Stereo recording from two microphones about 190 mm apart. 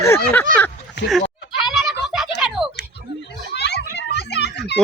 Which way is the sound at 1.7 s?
Centre (ahead or behind).